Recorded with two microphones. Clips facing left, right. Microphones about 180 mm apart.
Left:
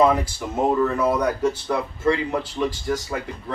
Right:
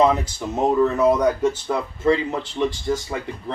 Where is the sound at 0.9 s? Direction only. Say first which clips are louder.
Right 4 dB; 20° right (ahead or behind).